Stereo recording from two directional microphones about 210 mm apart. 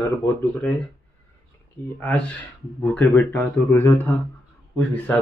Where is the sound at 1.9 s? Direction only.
10° left (ahead or behind).